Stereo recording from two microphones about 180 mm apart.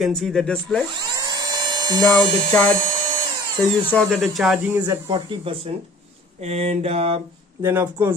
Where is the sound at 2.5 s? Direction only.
10° left (ahead or behind).